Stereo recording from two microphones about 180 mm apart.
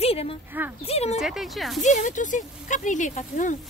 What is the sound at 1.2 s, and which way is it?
Speech, centre (ahead or behind).